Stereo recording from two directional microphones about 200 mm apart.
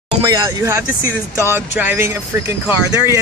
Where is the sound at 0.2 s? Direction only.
15° right (ahead or behind).